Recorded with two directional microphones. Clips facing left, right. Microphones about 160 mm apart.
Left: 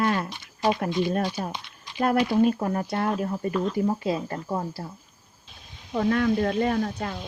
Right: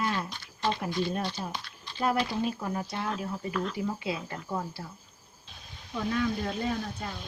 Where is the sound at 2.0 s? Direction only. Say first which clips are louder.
Left 7 dB; 55° left (ahead or behind).